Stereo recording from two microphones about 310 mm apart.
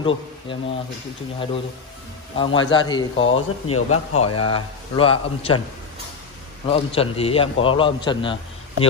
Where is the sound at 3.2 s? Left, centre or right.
Left.